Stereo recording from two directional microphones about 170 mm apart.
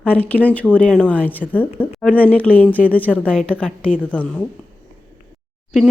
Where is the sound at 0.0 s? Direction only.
10° left (ahead or behind).